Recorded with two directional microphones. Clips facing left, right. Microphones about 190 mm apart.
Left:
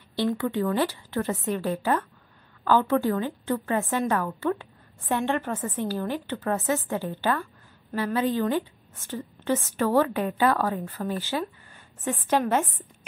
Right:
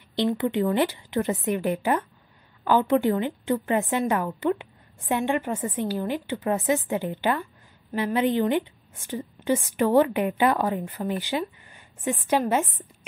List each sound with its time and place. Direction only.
0.1 s a woman's voice: 20° right (ahead or behind)